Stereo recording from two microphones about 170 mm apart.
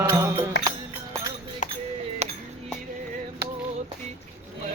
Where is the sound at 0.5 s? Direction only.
90° left.